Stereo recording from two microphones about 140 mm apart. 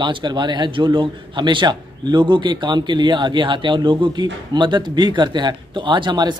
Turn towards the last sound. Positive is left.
turn(degrees=-35)  # may be behind; listen again after turning